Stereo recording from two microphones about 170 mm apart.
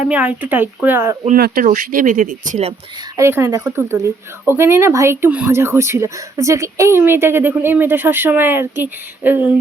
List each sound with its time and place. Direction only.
0.0 s speech: 5° right (ahead or behind)
1.4 s speech: 55° right (ahead or behind)
3.2 s speech: 15° right (ahead or behind)